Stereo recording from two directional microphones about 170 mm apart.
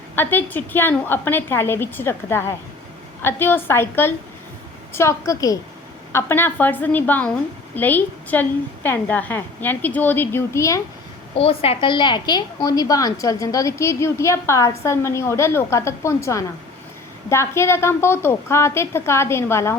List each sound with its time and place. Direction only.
0.2 s a woman's voice: 10° left (ahead or behind)
11.3 s a woman's voice: 35° left (ahead or behind); by 19.7 s 15° left (ahead or behind)